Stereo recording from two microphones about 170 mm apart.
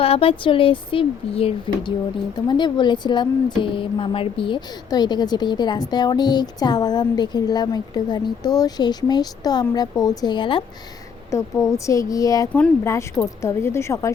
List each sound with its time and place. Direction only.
0.0 s a woman's voice: 35° left (ahead or behind)
11.3 s a woman's voice: 15° left (ahead or behind)